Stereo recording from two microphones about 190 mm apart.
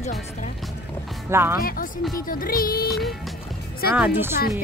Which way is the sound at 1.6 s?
50° left (ahead or behind).